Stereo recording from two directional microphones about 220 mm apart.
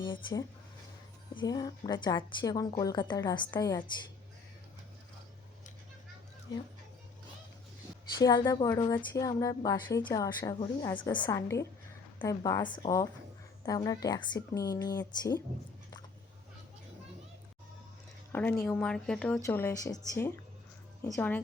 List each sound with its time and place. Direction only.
0.0 s a woman's voice: 20° left (ahead or behind)
8.2 s a woman's voice: 15° left (ahead or behind)
18.3 s a woman's voice: 10° left (ahead or behind)